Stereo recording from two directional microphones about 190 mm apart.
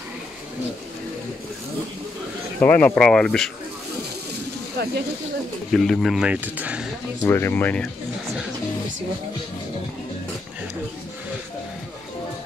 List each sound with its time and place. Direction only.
2.6 s speech: 10° left (ahead or behind)
4.8 s a sound: 55° right (ahead or behind)
5.7 s speech: centre (ahead or behind)
7.2 s speech: 10° left (ahead or behind)